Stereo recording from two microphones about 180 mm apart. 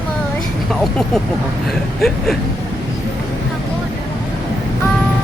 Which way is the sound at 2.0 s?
Centre (ahead or behind).